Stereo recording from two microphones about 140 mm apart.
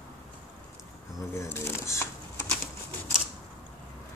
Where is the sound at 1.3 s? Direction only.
20° left (ahead or behind).